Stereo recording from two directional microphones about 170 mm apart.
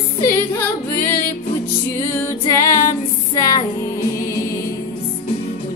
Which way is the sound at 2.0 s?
15° left (ahead or behind).